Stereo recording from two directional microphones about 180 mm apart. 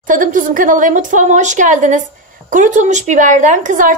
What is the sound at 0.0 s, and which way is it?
A woman's voice, 45° right (ahead or behind).